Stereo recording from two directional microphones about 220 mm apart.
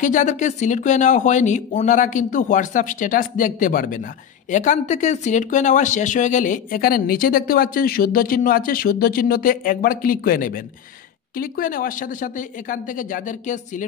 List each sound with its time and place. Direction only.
0.0 s speech: 35° left (ahead or behind)